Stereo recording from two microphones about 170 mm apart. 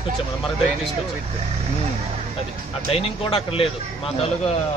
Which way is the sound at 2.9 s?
35° left (ahead or behind).